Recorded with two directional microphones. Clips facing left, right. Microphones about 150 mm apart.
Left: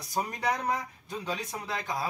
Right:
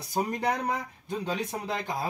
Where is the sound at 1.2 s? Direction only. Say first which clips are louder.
Right 3 dB; 25° right (ahead or behind).